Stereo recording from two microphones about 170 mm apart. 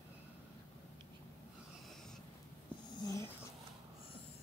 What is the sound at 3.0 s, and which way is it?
Dog, 20° left (ahead or behind).